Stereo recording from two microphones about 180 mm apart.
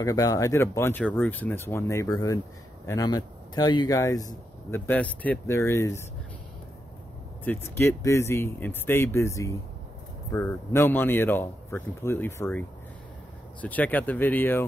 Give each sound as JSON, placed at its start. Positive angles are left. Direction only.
{"t": 0.0, "sound": "speech", "side_deg": 20}
{"t": 7.4, "sound": "speech", "side_deg": 15}